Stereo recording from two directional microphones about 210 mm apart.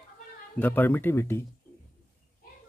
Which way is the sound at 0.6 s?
10° left (ahead or behind).